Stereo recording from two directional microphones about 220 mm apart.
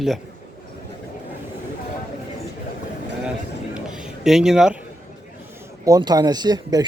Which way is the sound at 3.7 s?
5° right (ahead or behind).